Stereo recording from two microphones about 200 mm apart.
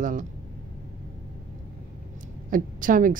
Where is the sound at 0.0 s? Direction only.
40° right (ahead or behind).